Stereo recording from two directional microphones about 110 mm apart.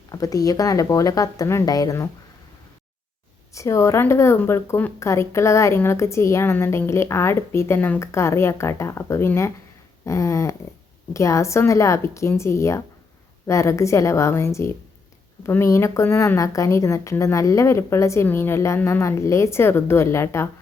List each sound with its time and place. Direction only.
0.1 s speech: 30° left (ahead or behind)
3.5 s a woman's voice: 30° left (ahead or behind)